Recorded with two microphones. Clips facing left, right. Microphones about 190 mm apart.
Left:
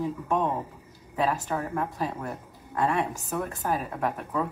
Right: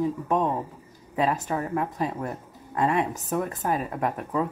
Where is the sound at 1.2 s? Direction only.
20° right (ahead or behind).